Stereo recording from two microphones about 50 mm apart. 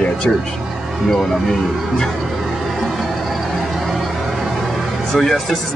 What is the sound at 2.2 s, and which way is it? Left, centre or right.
Vehicle, centre.